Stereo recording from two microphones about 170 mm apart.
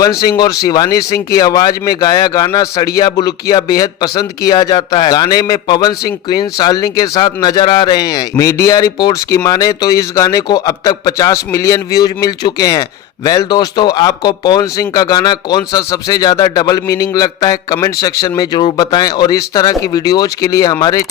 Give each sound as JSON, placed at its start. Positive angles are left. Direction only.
{"t": 0.2, "sound": "a man's voice", "side_deg": 20}